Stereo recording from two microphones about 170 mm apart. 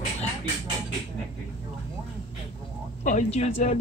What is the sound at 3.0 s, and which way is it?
Speech, 45° left (ahead or behind).